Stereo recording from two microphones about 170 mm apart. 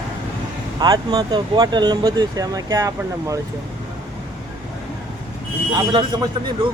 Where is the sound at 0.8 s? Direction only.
25° right (ahead or behind).